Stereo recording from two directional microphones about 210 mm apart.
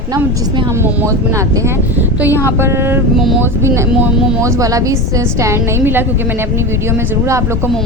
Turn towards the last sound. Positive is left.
turn(degrees=-15)  # may be behind; listen again after turning